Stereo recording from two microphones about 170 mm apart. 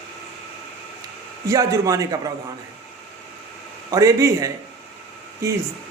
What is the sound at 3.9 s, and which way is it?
Speech, 20° right (ahead or behind).